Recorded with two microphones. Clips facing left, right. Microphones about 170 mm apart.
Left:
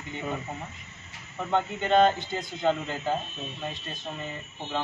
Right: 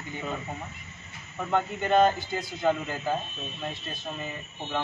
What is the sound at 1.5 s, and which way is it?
A man's voice, 20° left (ahead or behind).